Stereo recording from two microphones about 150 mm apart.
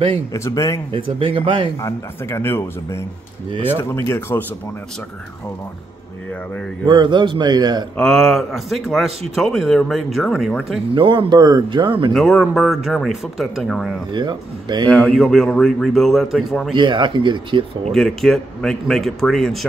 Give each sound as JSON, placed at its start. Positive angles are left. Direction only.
{"t": 0.3, "sound": "speech", "side_deg": 20}
{"t": 0.9, "sound": "speech", "side_deg": -35}
{"t": 1.8, "sound": "speech", "side_deg": 20}
{"t": 6.9, "sound": "speech", "side_deg": -30}
{"t": 8.0, "sound": "speech", "side_deg": 5}
{"t": 11.0, "sound": "speech", "side_deg": -35}
{"t": 12.1, "sound": "speech", "side_deg": 0}
{"t": 14.1, "sound": "speech", "side_deg": -30}
{"t": 14.9, "sound": "speech", "side_deg": 5}
{"t": 16.7, "sound": "speech", "side_deg": -30}
{"t": 17.9, "sound": "speech", "side_deg": 5}